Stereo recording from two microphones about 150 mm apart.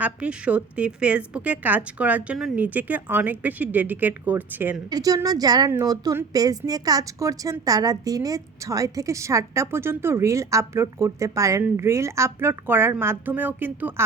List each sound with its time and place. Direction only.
0.0 s a woman's voice: 10° right (ahead or behind)
4.9 s a woman's voice: 25° right (ahead or behind)